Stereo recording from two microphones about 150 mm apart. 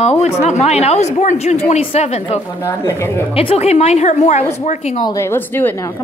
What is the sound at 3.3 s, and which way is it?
Speech, 40° left (ahead or behind).